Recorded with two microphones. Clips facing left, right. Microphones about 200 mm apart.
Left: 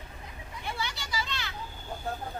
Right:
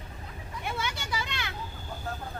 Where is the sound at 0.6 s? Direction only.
55° right (ahead or behind).